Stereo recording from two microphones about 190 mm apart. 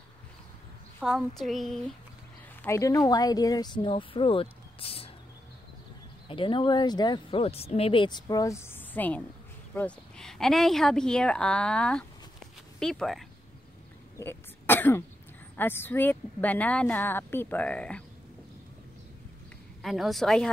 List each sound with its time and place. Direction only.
0.9 s a woman's voice: 5° left (ahead or behind)
2.6 s speech: 15° left (ahead or behind)
6.2 s a woman's voice: 25° left (ahead or behind); by 13.2 s centre (ahead or behind)
14.1 s throat clearing: 10° left (ahead or behind)
15.5 s speech: 10° left (ahead or behind)
19.8 s a woman's voice: centre (ahead or behind)